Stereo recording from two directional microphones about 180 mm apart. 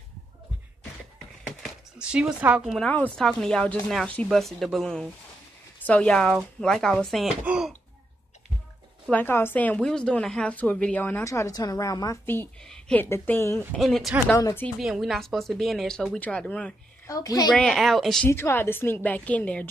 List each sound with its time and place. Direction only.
1.6 s speech: 5° right (ahead or behind)
9.1 s a woman's voice: 10° left (ahead or behind)
13.7 s speech: centre (ahead or behind)
14.3 s a woman's voice: 15° left (ahead or behind)
14.8 s speech: centre (ahead or behind)
17.1 s a child's voice: 20° left (ahead or behind)
17.6 s speech: centre (ahead or behind)
18.3 s a woman's voice: 15° left (ahead or behind)